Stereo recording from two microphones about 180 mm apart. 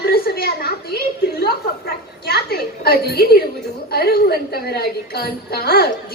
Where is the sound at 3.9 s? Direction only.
60° left (ahead or behind).